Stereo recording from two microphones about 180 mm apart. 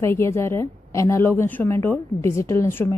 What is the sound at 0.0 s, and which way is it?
A woman's voice, 15° left (ahead or behind).